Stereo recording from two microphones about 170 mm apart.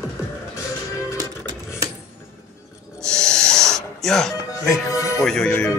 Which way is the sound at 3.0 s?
5° left (ahead or behind).